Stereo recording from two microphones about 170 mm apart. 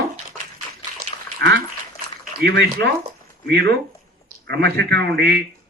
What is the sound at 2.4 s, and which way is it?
A man's voice, 80° right.